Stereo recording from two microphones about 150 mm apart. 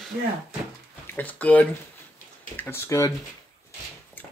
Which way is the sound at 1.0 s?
10° left (ahead or behind).